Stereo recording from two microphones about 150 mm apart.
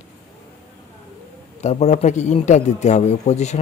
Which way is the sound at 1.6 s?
45° left (ahead or behind).